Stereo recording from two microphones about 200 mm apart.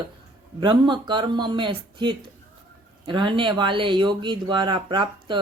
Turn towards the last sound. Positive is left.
turn(degrees=-25)  # may be behind; listen again after turning